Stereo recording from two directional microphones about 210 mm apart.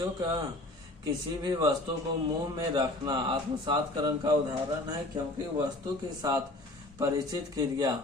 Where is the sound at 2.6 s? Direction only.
20° right (ahead or behind).